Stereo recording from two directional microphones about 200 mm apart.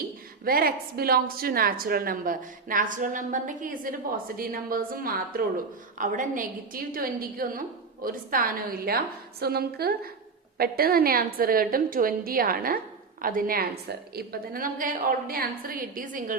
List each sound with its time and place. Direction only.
0.4 s a woman's voice: 50° right (ahead or behind)